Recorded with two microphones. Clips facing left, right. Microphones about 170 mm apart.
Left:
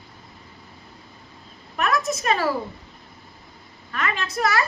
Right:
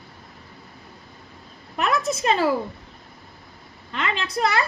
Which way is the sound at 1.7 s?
30° right (ahead or behind).